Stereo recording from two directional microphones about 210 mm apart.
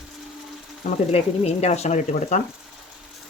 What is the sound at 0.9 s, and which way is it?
Speech, 30° left (ahead or behind).